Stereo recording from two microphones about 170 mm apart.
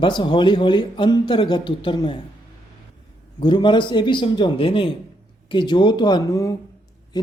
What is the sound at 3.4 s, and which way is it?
Speech, 30° left (ahead or behind).